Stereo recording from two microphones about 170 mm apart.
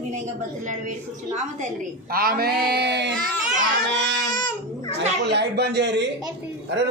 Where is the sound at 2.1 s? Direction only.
60° right (ahead or behind); by 3.1 s 85° right.